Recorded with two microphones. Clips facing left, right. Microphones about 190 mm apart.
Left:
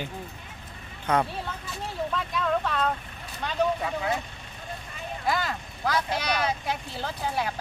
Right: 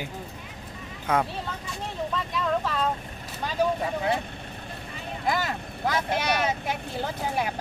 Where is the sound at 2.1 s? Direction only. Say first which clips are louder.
Even; centre (ahead or behind).